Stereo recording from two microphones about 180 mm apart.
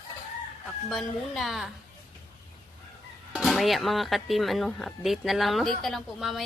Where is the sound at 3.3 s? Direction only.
Centre (ahead or behind).